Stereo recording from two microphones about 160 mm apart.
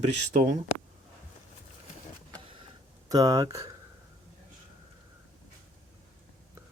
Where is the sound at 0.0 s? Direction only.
45° right (ahead or behind).